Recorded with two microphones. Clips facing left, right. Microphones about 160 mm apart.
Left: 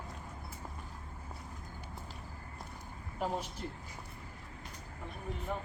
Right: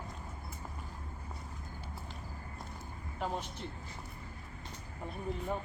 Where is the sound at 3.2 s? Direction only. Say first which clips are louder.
Left 1 dB; 10° left (ahead or behind).